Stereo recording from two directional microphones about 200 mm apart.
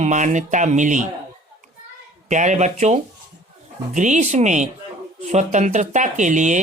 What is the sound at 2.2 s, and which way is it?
Speech, 35° right (ahead or behind).